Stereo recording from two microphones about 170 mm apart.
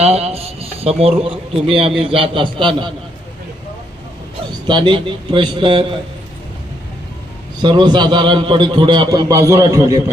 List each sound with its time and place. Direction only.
0.0 s a man's voice: 40° right (ahead or behind)
4.6 s a man's voice: 25° right (ahead or behind)
7.6 s a man's voice: 25° right (ahead or behind)